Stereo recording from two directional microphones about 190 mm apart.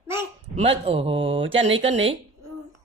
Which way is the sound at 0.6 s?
30° right (ahead or behind).